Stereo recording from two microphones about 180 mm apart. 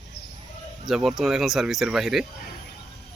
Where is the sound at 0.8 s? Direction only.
Centre (ahead or behind).